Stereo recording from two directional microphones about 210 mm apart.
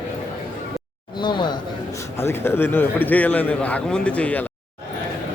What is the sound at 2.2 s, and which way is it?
A man's voice, 10° left (ahead or behind).